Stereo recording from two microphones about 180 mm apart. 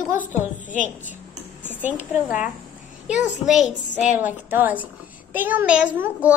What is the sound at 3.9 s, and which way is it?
Speech, 45° left (ahead or behind).